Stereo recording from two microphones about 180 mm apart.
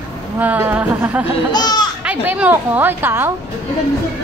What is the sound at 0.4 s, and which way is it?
Speech, 10° right (ahead or behind).